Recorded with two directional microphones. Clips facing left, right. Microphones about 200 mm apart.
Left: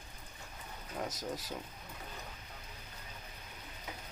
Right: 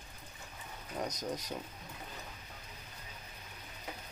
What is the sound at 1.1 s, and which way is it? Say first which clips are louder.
Speech: right 2 dB; 20° right (ahead or behind).